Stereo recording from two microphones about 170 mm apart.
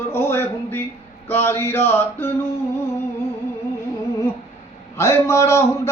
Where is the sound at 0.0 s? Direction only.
15° left (ahead or behind).